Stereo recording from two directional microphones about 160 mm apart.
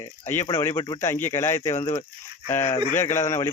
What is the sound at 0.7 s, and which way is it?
Speech, 25° left (ahead or behind).